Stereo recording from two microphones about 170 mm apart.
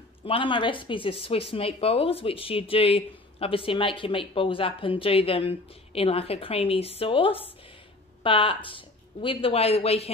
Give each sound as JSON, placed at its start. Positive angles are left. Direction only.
{"t": 0.2, "sound": "a woman's voice", "side_deg": 30}